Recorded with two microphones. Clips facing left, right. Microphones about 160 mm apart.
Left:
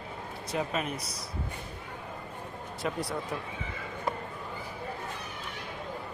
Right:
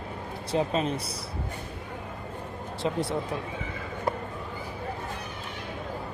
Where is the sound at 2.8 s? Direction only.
25° right (ahead or behind).